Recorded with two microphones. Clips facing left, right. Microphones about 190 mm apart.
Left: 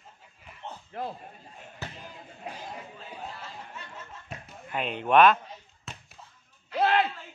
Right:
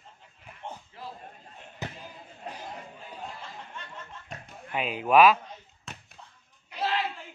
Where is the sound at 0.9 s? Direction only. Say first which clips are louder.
Left 13 dB; 60° left (ahead or behind).